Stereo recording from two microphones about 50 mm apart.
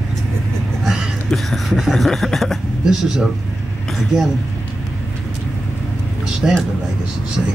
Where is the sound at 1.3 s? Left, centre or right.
Centre.